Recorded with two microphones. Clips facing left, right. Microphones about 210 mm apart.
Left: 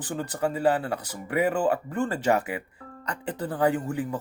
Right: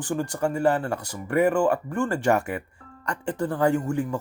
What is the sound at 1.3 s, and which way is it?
Speech, 20° left (ahead or behind).